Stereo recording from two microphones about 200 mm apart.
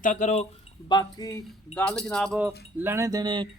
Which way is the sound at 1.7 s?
5° left (ahead or behind).